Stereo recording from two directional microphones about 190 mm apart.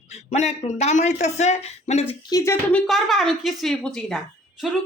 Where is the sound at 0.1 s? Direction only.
35° left (ahead or behind).